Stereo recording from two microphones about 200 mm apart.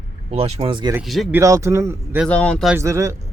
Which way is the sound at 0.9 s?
Centre (ahead or behind).